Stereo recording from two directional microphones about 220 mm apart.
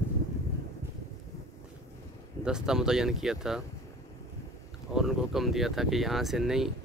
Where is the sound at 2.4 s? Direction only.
5° right (ahead or behind).